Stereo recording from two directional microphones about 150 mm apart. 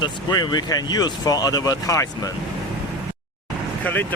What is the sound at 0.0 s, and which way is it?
Speech, 30° left (ahead or behind).